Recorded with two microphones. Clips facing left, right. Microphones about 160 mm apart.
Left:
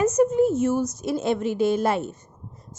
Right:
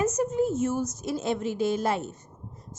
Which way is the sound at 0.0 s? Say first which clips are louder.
Left 6 dB; 70° left (ahead or behind).